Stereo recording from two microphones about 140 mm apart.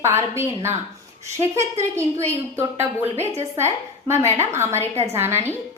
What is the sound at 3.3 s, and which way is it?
A woman's voice, 20° right (ahead or behind).